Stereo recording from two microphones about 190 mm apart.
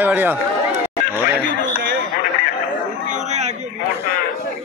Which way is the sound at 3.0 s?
40° right (ahead or behind).